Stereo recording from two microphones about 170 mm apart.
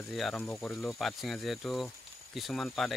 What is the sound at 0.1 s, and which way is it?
Speech, centre (ahead or behind).